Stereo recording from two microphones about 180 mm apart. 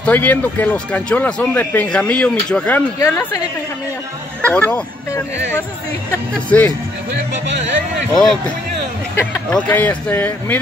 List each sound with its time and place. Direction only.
0.0 s speech: 10° left (ahead or behind)
3.0 s a woman's voice: 20° left (ahead or behind)
4.4 s speech: 5° left (ahead or behind)
6.5 s speech: 10° left (ahead or behind)
8.2 s speech: 5° left (ahead or behind)